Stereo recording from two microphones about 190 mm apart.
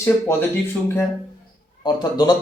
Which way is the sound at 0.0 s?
10° left (ahead or behind).